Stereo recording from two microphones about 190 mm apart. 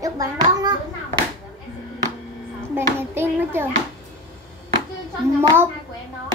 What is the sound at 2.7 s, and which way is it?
Speech, 10° right (ahead or behind).